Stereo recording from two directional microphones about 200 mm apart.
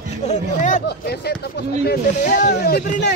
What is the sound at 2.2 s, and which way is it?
Speech, 40° left (ahead or behind).